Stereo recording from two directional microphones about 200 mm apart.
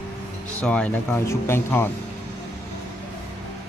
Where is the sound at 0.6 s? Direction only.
5° left (ahead or behind).